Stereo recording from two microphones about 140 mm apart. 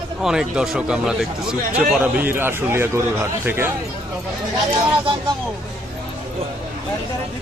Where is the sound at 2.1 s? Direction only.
15° right (ahead or behind).